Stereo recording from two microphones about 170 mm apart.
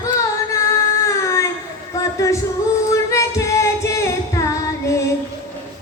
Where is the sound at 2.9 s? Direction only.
15° left (ahead or behind).